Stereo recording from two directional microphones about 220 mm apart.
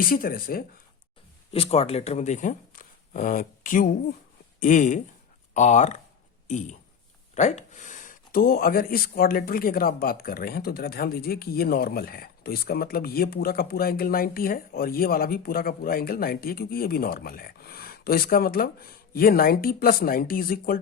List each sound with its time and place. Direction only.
0.0 s speech: 40° left (ahead or behind)
1.5 s speech: 25° left (ahead or behind)